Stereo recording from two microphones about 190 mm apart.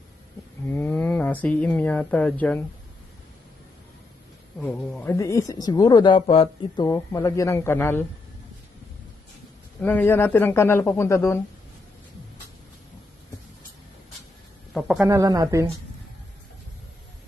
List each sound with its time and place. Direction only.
0.7 s speech: 10° left (ahead or behind)
4.6 s speech: 5° left (ahead or behind)
5.1 s speech: 15° left (ahead or behind)
6.9 s a man's voice: 15° left (ahead or behind)
9.8 s a man's voice: 10° left (ahead or behind)
14.7 s speech: 5° left (ahead or behind)
15.0 s speech: 15° right (ahead or behind)